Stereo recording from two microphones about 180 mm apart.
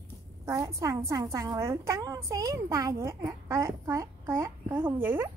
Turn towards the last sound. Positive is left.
turn(degrees=-10)  # may be behind; listen again after turning